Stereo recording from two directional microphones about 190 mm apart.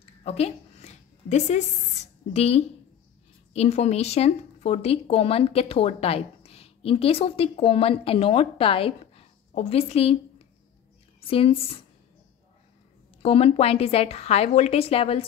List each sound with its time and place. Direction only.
0.2 s a sound: 35° left (ahead or behind)
2.3 s speech: 35° left (ahead or behind)
11.1 s speech: 30° left (ahead or behind)
13.2 s speech: 30° left (ahead or behind)